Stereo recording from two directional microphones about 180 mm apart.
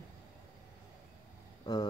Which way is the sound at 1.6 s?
20° left (ahead or behind).